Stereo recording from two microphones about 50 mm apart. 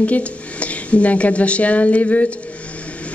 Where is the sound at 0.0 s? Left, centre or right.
Left.